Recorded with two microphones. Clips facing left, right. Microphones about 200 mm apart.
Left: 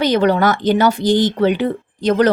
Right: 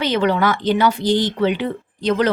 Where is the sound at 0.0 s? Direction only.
40° left (ahead or behind).